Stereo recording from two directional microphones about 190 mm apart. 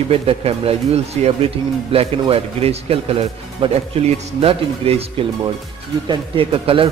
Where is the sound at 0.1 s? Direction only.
30° right (ahead or behind).